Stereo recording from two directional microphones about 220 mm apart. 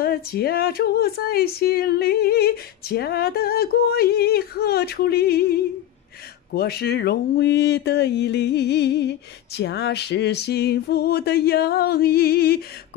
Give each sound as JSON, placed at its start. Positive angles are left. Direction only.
{"t": 0.0, "sound": "speech", "side_deg": 45}